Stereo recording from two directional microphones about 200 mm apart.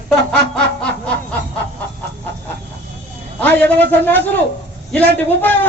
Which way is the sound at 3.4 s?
10° left (ahead or behind).